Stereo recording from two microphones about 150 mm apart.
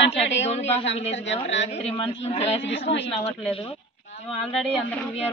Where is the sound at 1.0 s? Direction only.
45° left (ahead or behind).